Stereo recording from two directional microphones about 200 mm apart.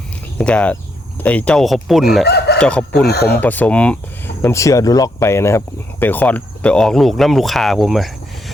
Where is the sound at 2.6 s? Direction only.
5° left (ahead or behind).